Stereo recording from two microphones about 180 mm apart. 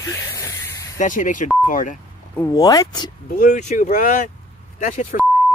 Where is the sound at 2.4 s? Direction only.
20° left (ahead or behind).